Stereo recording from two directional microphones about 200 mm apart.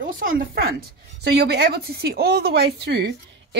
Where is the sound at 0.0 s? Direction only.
45° right (ahead or behind).